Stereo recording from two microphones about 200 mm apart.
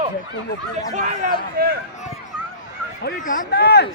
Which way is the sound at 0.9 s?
35° right (ahead or behind).